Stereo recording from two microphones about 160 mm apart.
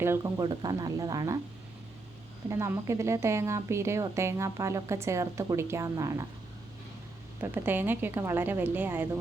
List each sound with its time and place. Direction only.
0.0 s speech: 20° right (ahead or behind)
2.5 s a woman's voice: 15° right (ahead or behind)
7.4 s a woman's voice: 15° right (ahead or behind)